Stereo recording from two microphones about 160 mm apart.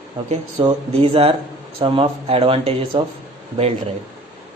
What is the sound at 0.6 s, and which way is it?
Speech, 40° right (ahead or behind).